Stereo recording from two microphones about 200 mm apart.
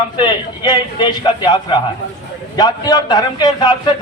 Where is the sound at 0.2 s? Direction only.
20° left (ahead or behind).